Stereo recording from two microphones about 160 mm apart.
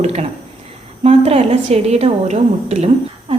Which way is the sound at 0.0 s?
40° right (ahead or behind).